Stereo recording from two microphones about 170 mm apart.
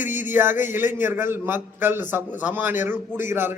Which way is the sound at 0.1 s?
45° left (ahead or behind).